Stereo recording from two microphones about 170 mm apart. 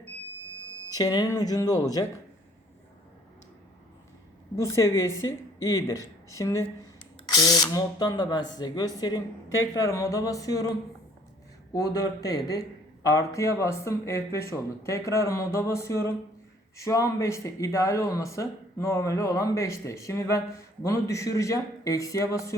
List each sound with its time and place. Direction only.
0.9 s speech: 20° left (ahead or behind)
4.5 s speech: 15° left (ahead or behind)
11.7 s speech: 20° left (ahead or behind)